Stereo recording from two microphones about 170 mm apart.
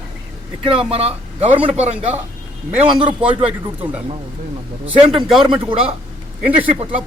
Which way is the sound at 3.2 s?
5° right (ahead or behind).